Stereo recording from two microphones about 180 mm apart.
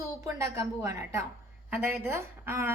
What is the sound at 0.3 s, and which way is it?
A woman's voice, 15° right (ahead or behind).